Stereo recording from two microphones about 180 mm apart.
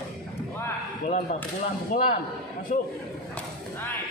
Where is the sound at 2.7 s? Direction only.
45° left (ahead or behind).